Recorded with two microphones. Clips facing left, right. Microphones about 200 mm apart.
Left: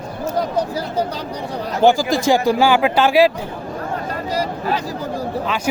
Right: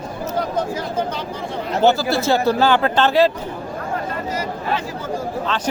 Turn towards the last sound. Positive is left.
turn(degrees=10)  # may be behind; listen again after turning